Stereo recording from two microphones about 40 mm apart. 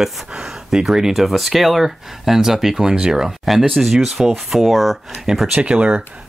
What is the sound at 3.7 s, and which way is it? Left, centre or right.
Speech, centre.